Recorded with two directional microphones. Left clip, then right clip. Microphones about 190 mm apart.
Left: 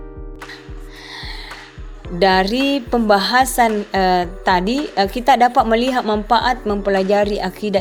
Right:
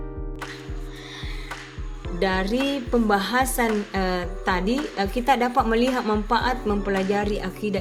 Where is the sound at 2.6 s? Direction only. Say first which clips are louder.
Left 7 dB; 40° left (ahead or behind).